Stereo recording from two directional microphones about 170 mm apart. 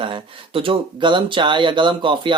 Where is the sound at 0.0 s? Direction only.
30° right (ahead or behind).